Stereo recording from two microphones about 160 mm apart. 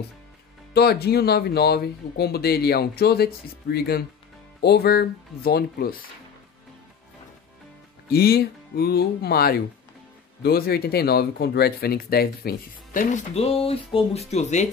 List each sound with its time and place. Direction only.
0.7 s speech: 80° left
8.1 s speech: 75° left (ahead or behind); by 14.7 s 45° left (ahead or behind)